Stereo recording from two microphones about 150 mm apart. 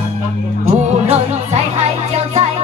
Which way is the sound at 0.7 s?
45° right (ahead or behind).